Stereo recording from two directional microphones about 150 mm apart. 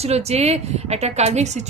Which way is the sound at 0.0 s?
45° right (ahead or behind).